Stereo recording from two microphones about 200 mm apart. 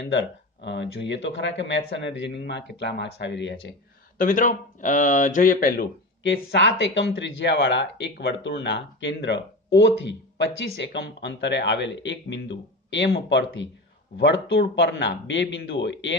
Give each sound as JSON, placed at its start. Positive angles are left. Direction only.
{"t": 0.0, "sound": "speech", "side_deg": 60}
{"t": 4.2, "sound": "speech", "side_deg": 40}
{"t": 6.2, "sound": "speech", "side_deg": 60}